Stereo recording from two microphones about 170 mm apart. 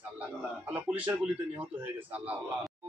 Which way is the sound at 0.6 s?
10° right (ahead or behind).